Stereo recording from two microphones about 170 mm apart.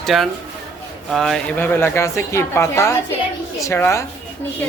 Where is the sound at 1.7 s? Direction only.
15° left (ahead or behind).